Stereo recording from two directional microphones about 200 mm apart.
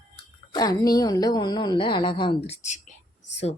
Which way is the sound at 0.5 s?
20° left (ahead or behind).